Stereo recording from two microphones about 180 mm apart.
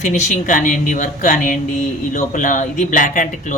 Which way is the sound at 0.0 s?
40° left (ahead or behind).